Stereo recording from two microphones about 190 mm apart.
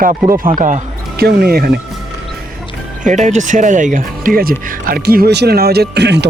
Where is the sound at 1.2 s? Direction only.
55° right (ahead or behind).